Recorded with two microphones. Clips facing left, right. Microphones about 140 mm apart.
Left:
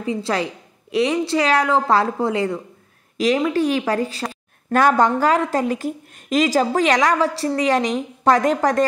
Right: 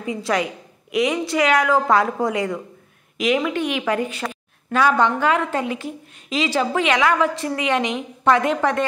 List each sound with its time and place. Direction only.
0.0 s a woman's voice: 30° left (ahead or behind)
4.7 s a woman's voice: 45° left (ahead or behind)